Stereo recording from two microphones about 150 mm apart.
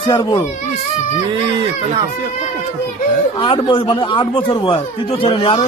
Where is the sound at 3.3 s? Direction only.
35° left (ahead or behind).